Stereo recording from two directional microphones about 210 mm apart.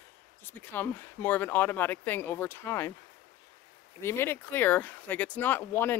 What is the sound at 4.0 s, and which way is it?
Speech, 10° left (ahead or behind).